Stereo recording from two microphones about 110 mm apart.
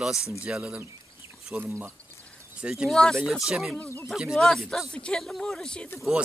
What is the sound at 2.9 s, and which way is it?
Speech, 5° left (ahead or behind).